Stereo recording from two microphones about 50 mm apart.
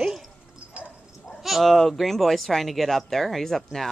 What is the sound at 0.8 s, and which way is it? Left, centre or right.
Dog, right.